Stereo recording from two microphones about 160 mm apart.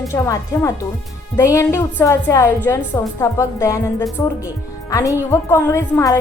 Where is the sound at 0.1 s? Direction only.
20° left (ahead or behind).